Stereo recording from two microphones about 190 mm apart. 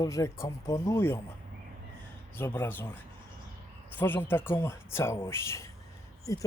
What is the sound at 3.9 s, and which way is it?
Speech, 10° left (ahead or behind).